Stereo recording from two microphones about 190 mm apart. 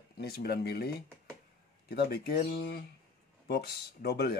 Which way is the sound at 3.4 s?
55° left (ahead or behind).